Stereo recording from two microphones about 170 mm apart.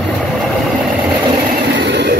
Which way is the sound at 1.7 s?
85° right.